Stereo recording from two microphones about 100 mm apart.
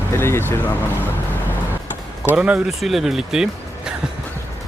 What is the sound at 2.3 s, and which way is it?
Speech, 15° right (ahead or behind).